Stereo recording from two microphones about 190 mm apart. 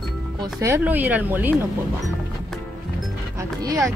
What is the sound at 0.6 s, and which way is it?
Speech, 15° right (ahead or behind).